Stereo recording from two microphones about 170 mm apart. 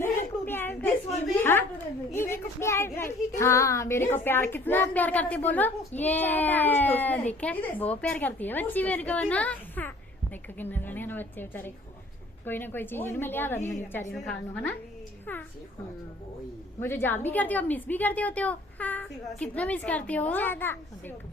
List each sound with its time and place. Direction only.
0.4 s a sound: 10° left (ahead or behind)
2.1 s speech: 15° left (ahead or behind)
14.1 s speech: 5° left (ahead or behind)
16.8 s speech: 10° left (ahead or behind)